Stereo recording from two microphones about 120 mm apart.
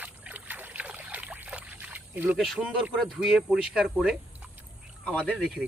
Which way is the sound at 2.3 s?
Centre (ahead or behind).